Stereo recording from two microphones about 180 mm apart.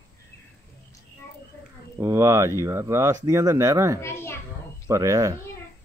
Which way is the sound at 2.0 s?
15° right (ahead or behind).